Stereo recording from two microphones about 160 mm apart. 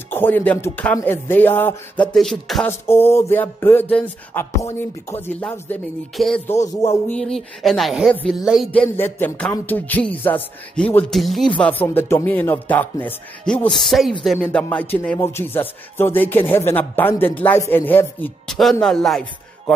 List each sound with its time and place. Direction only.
0.1 s speech: 10° left (ahead or behind)
2.1 s speech: centre (ahead or behind)
2.9 s speech: 15° left (ahead or behind)
6.1 s speech: centre (ahead or behind)
6.4 s speech: 20° left (ahead or behind)
6.9 s speech: 10° left (ahead or behind)
8.4 s speech: 5° right (ahead or behind)
8.9 s speech: 15° left (ahead or behind)